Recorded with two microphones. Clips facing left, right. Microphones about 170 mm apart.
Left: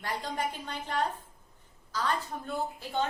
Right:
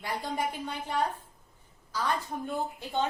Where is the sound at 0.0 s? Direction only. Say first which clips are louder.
Right 1 dB; 10° right (ahead or behind).